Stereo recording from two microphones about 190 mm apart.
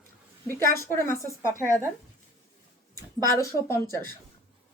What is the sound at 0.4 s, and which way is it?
Speech, 15° left (ahead or behind).